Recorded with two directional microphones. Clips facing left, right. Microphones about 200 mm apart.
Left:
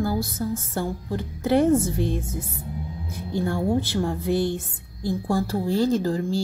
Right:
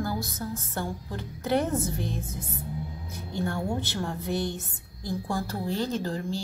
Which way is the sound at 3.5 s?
35° left (ahead or behind).